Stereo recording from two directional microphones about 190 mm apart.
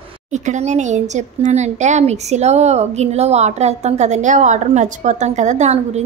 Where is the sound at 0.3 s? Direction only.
40° right (ahead or behind).